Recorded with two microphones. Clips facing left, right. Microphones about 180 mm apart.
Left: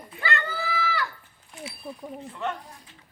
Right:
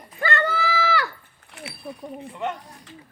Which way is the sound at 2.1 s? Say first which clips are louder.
Right 3 dB; 15° right (ahead or behind).